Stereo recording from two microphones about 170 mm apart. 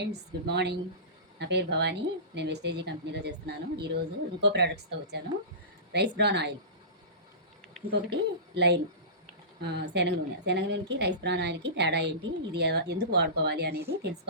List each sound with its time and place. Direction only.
0.0 s speech: 75° right (ahead or behind)
1.4 s a woman's voice: 90° right
8.5 s a woman's voice: 80° right